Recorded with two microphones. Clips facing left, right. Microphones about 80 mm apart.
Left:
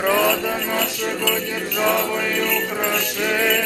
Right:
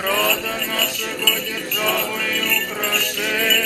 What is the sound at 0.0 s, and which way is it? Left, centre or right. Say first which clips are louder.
Music: left 3 dB; centre.